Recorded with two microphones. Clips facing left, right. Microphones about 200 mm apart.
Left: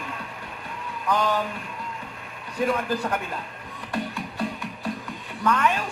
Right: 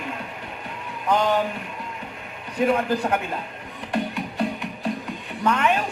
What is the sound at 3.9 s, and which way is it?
Music, 20° right (ahead or behind).